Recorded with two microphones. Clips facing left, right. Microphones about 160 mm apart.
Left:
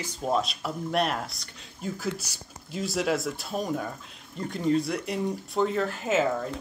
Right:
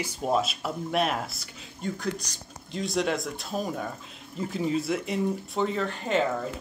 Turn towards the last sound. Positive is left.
turn(degrees=5)  # may be behind; listen again after turning